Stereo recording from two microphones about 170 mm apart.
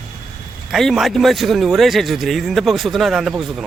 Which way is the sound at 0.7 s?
Centre (ahead or behind).